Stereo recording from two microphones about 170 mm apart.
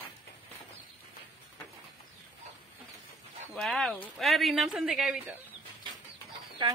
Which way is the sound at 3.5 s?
Centre (ahead or behind).